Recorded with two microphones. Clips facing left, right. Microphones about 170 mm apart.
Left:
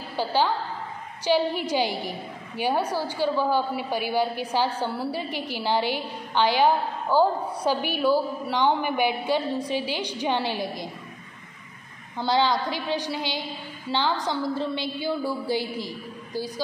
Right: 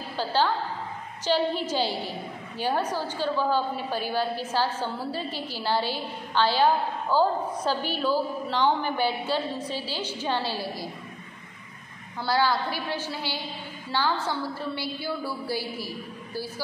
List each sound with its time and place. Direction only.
0.1 s a woman's voice: 15° left (ahead or behind)
12.2 s a woman's voice: 20° left (ahead or behind)